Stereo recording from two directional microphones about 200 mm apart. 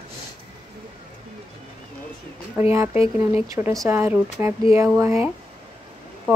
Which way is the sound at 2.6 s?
10° right (ahead or behind).